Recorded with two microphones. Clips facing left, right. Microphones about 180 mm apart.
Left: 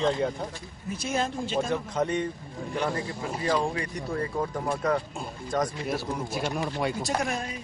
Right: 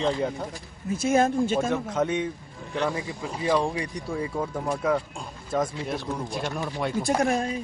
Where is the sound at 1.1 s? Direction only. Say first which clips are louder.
Right 8 dB; 50° right (ahead or behind).